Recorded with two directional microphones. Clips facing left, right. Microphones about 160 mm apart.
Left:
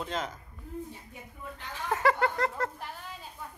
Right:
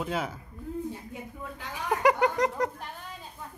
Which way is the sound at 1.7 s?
15° right (ahead or behind).